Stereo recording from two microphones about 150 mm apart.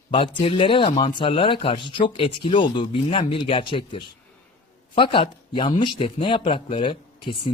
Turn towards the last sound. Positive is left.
turn(degrees=35)  # may be behind; listen again after turning